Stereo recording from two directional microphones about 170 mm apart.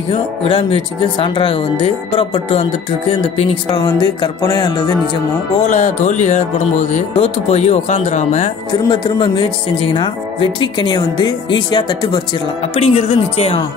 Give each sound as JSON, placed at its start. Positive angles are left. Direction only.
{"t": 0.1, "sound": "speech", "side_deg": 30}
{"t": 3.1, "sound": "music", "side_deg": 30}
{"t": 5.7, "sound": "speech", "side_deg": 45}
{"t": 8.7, "sound": "music", "side_deg": 25}
{"t": 12.7, "sound": "speech", "side_deg": 35}